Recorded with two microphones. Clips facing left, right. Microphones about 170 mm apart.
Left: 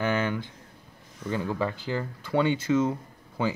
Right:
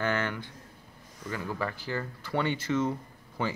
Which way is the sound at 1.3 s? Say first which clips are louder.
Left 5 dB; 25° left (ahead or behind).